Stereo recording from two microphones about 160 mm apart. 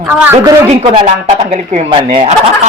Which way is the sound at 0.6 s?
35° right (ahead or behind).